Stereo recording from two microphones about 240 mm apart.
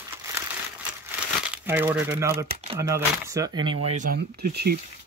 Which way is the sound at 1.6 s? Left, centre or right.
Centre.